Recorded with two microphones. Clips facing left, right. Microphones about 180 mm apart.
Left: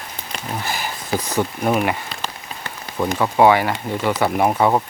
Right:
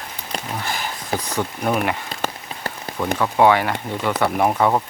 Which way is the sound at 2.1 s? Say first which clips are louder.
Right 3 dB; 45° right (ahead or behind).